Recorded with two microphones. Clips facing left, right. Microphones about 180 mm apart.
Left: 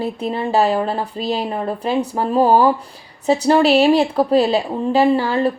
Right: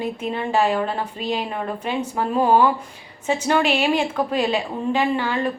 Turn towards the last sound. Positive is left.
turn(degrees=35)  # may be behind; listen again after turning